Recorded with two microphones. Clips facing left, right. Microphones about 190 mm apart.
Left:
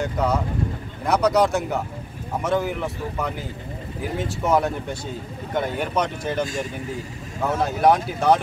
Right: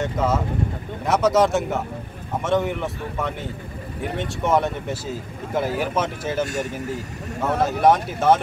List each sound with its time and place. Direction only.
0.0 s speech: centre (ahead or behind)
6.4 s speech: 70° right (ahead or behind)
7.4 s speech: centre (ahead or behind)